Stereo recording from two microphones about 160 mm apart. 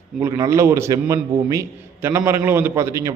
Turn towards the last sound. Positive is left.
turn(degrees=-20)  # may be behind; listen again after turning